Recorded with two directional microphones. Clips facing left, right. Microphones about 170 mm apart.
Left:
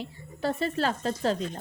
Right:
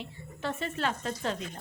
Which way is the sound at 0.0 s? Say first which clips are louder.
Left 5 dB; 35° left (ahead or behind).